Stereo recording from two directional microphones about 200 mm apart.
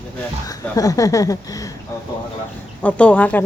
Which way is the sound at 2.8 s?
5° left (ahead or behind).